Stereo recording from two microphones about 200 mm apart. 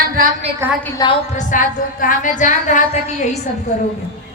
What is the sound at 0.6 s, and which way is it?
Speech, 10° right (ahead or behind).